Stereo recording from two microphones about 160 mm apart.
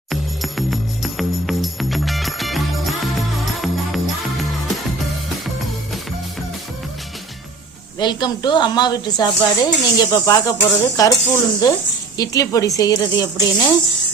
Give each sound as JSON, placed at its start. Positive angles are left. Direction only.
{"t": 0.1, "sound": "music", "side_deg": 0}
{"t": 7.9, "sound": "a woman's voice", "side_deg": 30}